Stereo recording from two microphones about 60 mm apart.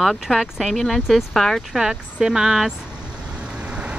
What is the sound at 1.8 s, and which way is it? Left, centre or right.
Speech, centre.